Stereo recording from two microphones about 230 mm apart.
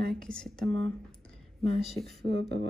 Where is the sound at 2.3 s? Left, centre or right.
Right.